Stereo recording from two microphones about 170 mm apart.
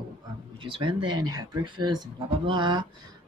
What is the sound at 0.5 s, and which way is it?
Speech, 30° right (ahead or behind).